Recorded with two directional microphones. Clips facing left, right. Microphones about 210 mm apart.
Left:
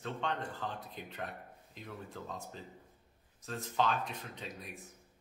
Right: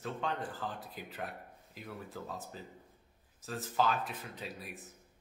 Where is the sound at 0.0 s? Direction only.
5° right (ahead or behind).